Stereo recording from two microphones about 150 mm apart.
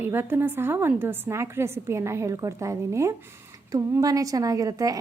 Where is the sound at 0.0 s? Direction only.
15° right (ahead or behind).